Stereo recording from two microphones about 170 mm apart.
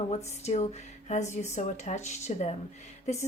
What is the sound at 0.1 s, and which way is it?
A woman's voice, 40° left (ahead or behind).